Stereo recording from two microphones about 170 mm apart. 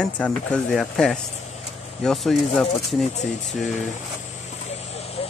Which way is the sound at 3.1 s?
45° left (ahead or behind).